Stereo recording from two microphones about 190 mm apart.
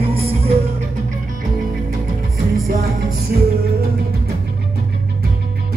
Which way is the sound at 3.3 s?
55° right (ahead or behind).